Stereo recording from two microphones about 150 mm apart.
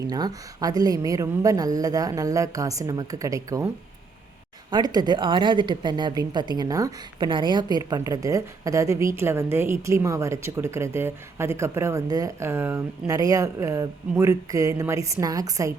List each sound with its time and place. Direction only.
0.0 s a woman's voice: 25° right (ahead or behind)
4.7 s a woman's voice: 25° right (ahead or behind)